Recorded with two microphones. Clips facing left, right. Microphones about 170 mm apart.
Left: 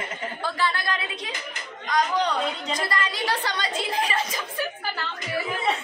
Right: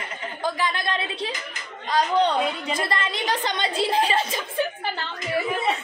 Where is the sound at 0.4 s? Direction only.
15° right (ahead or behind).